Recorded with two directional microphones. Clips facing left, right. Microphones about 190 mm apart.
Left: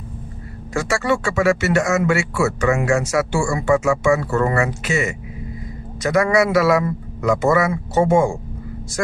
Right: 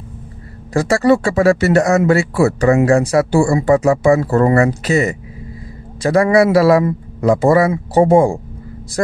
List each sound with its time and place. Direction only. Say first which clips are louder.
0.7 s speech: right 7 dB; 35° right (ahead or behind)